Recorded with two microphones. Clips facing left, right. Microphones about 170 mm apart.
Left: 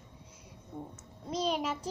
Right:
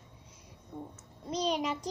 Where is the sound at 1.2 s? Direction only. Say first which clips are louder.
Right 1 dB; 5° left (ahead or behind).